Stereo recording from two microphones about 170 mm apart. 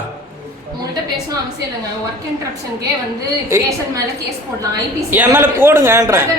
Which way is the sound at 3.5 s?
15° right (ahead or behind).